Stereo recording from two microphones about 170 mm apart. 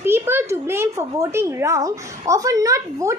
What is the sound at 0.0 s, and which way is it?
A woman's voice, 15° right (ahead or behind).